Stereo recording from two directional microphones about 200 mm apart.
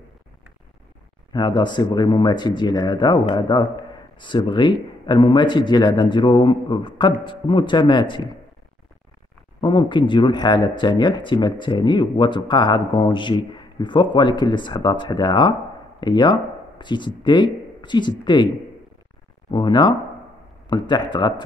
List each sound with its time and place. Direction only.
1.3 s speech: 20° left (ahead or behind)
9.6 s speech: 25° left (ahead or behind)
19.5 s speech: 20° left (ahead or behind)